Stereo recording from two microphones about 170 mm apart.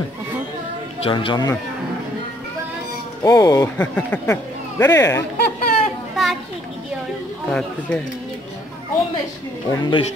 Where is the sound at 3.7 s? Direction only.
10° left (ahead or behind).